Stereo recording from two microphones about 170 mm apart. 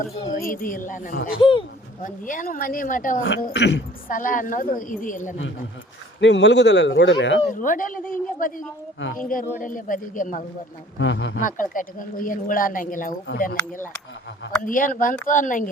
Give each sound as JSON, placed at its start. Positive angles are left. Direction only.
{"t": 0.3, "sound": "speech", "side_deg": 55}
{"t": 1.4, "sound": "speech", "side_deg": 30}
{"t": 2.0, "sound": "speech", "side_deg": 50}
{"t": 3.5, "sound": "speech", "side_deg": 90}
{"t": 4.1, "sound": "speech", "side_deg": 50}
{"t": 6.1, "sound": "speech", "side_deg": 90}
{"t": 7.5, "sound": "speech", "side_deg": 50}
{"t": 10.9, "sound": "speech", "side_deg": 90}
{"t": 11.3, "sound": "speech", "side_deg": 50}